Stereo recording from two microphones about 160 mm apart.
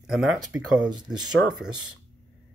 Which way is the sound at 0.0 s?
5° right (ahead or behind).